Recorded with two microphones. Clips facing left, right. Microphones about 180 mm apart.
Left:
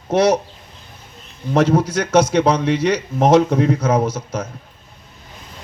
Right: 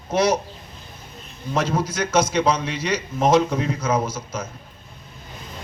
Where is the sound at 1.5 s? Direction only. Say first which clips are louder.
Left 7 dB; 65° left (ahead or behind).